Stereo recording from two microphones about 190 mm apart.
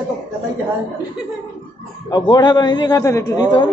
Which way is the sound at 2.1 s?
20° left (ahead or behind).